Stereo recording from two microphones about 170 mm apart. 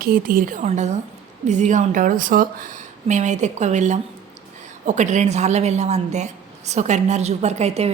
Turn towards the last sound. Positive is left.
turn(degrees=-40)  # may be behind; listen again after turning